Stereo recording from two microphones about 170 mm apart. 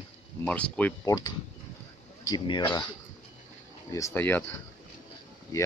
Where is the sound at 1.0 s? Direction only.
20° left (ahead or behind).